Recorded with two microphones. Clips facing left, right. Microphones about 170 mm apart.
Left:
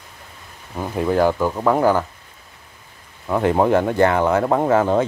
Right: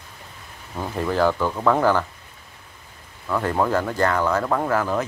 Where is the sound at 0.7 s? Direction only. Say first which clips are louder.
Left 4 dB; 15° left (ahead or behind).